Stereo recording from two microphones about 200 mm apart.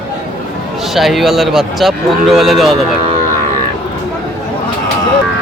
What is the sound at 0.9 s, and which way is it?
Speech, centre (ahead or behind).